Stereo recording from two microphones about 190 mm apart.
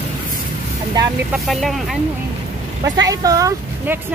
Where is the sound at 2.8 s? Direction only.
20° right (ahead or behind).